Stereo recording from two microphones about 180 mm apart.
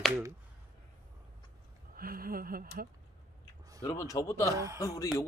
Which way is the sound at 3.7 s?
15° left (ahead or behind).